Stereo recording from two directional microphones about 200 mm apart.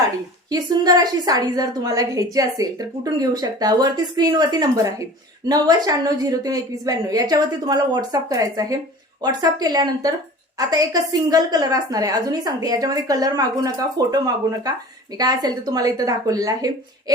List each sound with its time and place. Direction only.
0.5 s a woman's voice: 20° right (ahead or behind)
15.2 s a woman's voice: 20° right (ahead or behind)